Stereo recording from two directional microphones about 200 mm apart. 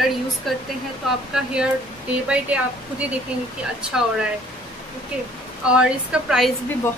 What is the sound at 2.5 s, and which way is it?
Speech, 5° right (ahead or behind).